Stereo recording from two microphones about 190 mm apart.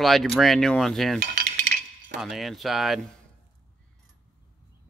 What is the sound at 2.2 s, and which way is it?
Cutlery, centre (ahead or behind).